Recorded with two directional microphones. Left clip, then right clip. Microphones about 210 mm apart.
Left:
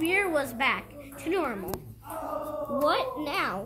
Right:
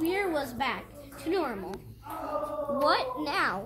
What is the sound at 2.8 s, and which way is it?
Speech, 5° left (ahead or behind).